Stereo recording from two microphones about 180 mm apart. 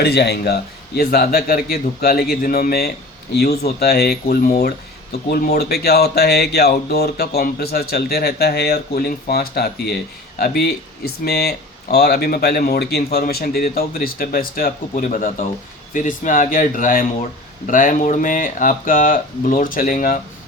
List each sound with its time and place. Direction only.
0.0 s speech: 65° left (ahead or behind); by 20.1 s 50° left (ahead or behind)